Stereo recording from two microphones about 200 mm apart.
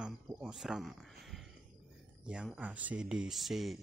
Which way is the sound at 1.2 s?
Centre (ahead or behind).